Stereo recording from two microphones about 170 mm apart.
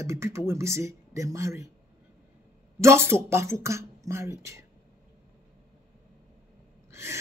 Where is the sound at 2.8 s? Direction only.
15° right (ahead or behind).